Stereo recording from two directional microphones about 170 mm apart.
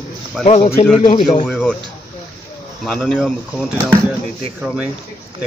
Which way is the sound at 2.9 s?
5° left (ahead or behind).